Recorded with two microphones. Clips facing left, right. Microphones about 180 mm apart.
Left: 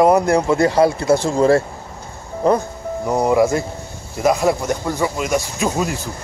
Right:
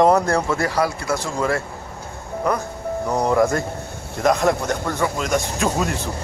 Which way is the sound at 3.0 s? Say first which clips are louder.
Left 3 dB; 10° left (ahead or behind).